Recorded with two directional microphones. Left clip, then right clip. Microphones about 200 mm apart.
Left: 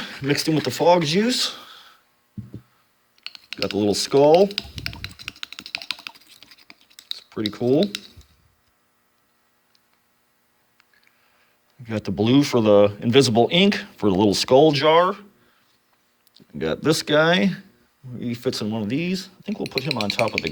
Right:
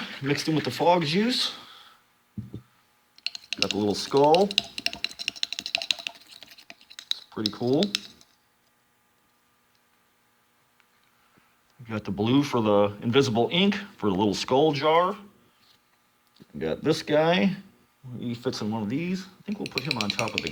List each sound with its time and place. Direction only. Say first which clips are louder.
0.0 s speech: left 5 dB; 30° left (ahead or behind)
3.2 s typing: even; centre (ahead or behind)
3.8 s speech: left 6 dB; 35° left (ahead or behind)
4.4 s typing: right 1 dB; centre (ahead or behind)
7.2 s a sound: left 5 dB; 35° left (ahead or behind)
7.5 s speech: left 6 dB; 30° left (ahead or behind)
11.9 s speech: left 5 dB; 35° left (ahead or behind)
16.3 s speech: left 4 dB; 35° left (ahead or behind)
19.9 s speech: left 5 dB; 10° left (ahead or behind)